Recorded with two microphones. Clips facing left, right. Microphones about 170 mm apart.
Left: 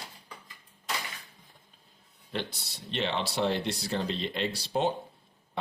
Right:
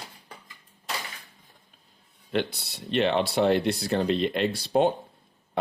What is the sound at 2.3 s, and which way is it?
Speech, 60° right (ahead or behind).